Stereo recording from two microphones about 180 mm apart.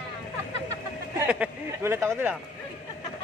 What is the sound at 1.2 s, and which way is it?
Speech, 10° right (ahead or behind).